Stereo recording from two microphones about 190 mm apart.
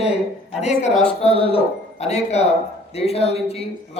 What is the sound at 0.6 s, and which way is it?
Speech, 35° left (ahead or behind).